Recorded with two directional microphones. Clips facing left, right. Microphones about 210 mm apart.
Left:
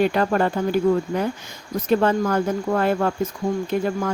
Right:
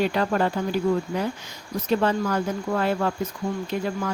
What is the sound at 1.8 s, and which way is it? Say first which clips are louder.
Speech: left 4 dB; 50° left (ahead or behind).